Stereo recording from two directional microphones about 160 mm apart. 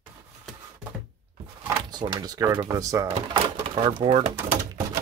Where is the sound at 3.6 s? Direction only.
30° right (ahead or behind).